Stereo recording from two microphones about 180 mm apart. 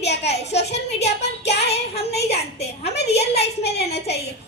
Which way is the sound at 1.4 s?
65° left (ahead or behind).